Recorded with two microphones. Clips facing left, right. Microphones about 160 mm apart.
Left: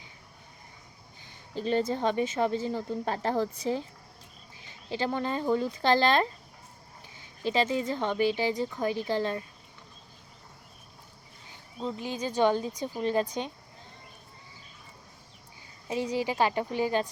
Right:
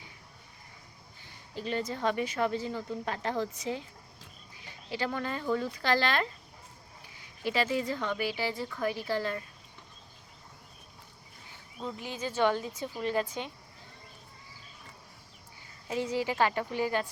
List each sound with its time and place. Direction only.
1.5 s speech: 30° left (ahead or behind)
4.9 s speech: 25° left (ahead or behind)
11.8 s speech: 25° left (ahead or behind)
15.9 s speech: 15° left (ahead or behind)